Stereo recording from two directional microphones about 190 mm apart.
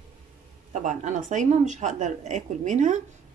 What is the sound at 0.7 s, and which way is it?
A woman's voice, 40° right (ahead or behind).